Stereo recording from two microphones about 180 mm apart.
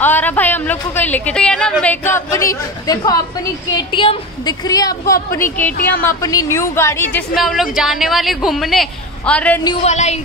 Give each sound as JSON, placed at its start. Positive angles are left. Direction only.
{"t": 0.0, "sound": "a woman's voice", "side_deg": 10}
{"t": 5.8, "sound": "speech", "side_deg": 55}
{"t": 6.0, "sound": "a woman's voice", "side_deg": 15}
{"t": 7.3, "sound": "a woman's voice", "side_deg": 0}
{"t": 9.8, "sound": "a woman's voice", "side_deg": 40}